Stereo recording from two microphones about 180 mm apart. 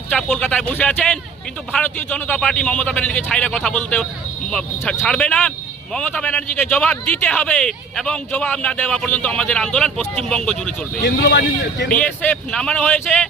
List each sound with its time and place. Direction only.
0.1 s a man's voice: 5° left (ahead or behind)
11.0 s speech: 65° left (ahead or behind)
11.9 s a man's voice: 10° left (ahead or behind)